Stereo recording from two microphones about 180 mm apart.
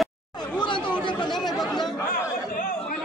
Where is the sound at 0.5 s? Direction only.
25° left (ahead or behind).